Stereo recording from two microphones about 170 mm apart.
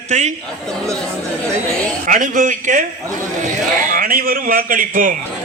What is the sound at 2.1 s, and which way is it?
Speech, 50° right (ahead or behind).